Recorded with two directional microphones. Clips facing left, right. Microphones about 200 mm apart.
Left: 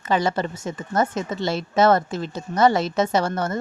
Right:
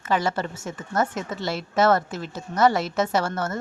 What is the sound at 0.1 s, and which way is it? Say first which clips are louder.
Speech: left 2 dB; 20° left (ahead or behind).